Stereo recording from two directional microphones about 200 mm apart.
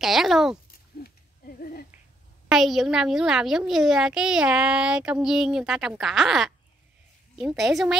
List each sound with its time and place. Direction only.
0.0 s a child's voice: centre (ahead or behind)
1.6 s a sound: 50° left (ahead or behind)
2.5 s a child's voice: centre (ahead or behind)